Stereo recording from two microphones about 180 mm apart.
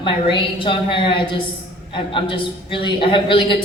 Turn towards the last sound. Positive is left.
turn(degrees=25)  # may be behind; listen again after turning